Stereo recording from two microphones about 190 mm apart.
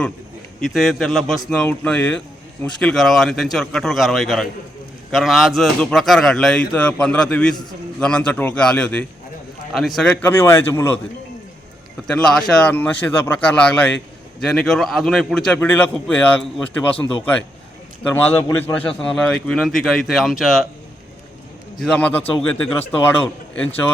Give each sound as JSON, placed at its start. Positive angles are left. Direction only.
{"t": 0.6, "sound": "a man's voice", "side_deg": 0}
{"t": 12.0, "sound": "a man's voice", "side_deg": 5}
{"t": 18.0, "sound": "a man's voice", "side_deg": 10}
{"t": 21.8, "sound": "speech", "side_deg": 5}